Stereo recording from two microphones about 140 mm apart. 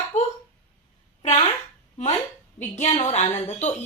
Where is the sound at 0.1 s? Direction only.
60° left (ahead or behind).